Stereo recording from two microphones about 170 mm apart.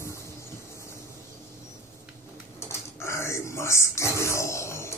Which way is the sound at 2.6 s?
15° left (ahead or behind).